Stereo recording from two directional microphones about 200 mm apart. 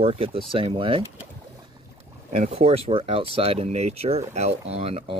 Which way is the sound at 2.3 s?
30° right (ahead or behind).